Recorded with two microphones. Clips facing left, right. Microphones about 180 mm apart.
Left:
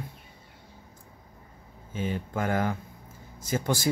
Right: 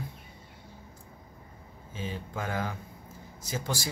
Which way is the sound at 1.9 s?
55° left (ahead or behind).